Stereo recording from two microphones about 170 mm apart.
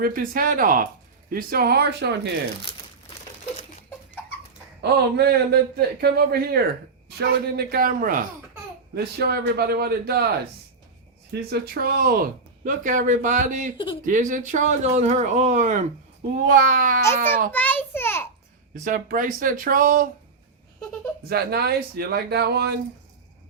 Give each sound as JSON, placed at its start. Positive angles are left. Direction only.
{"t": 0.0, "sound": "a man's voice", "side_deg": -55}
{"t": 2.7, "sound": "crumpling", "side_deg": 35}
{"t": 4.8, "sound": "a man's voice", "side_deg": -70}
{"t": 9.2, "sound": "a man's voice", "side_deg": -70}
{"t": 11.3, "sound": "speech", "side_deg": -70}
{"t": 17.5, "sound": "a sound", "side_deg": 10}
{"t": 18.9, "sound": "speech", "side_deg": -50}
{"t": 21.2, "sound": "a man's voice", "side_deg": -65}